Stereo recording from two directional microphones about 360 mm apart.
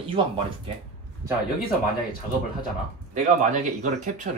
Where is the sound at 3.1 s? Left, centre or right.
Centre.